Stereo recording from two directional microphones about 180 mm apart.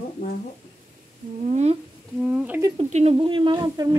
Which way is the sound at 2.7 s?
35° right (ahead or behind).